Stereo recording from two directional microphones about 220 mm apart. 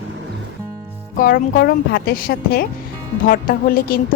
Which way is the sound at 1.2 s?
45° left (ahead or behind).